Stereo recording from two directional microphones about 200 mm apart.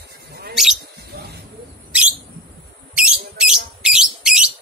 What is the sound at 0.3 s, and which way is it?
Mouse, 55° right (ahead or behind).